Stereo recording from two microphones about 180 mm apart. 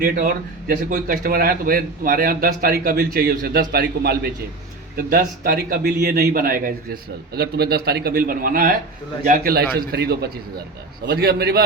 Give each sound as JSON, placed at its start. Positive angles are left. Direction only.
{"t": 0.0, "sound": "a man's voice", "side_deg": -45}